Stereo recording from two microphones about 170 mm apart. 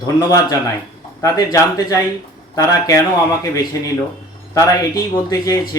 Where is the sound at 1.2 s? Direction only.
20° left (ahead or behind).